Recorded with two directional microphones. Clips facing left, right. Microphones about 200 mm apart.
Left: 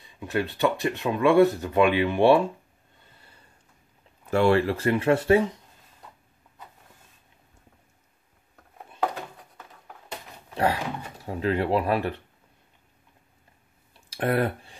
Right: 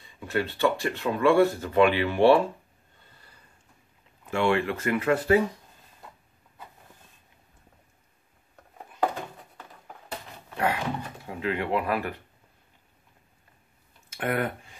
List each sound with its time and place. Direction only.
0.2 s speech: 20° left (ahead or behind)
4.3 s speech: 40° left (ahead or behind)
10.5 s thunk: 35° left (ahead or behind)
11.2 s speech: 40° left (ahead or behind)
14.1 s speech: 35° left (ahead or behind)